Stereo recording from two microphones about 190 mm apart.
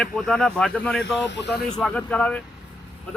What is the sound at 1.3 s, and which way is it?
Speech, 60° left (ahead or behind).